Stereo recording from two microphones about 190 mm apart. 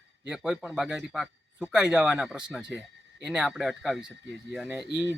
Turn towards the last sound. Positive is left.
turn(degrees=20)  # may be behind; listen again after turning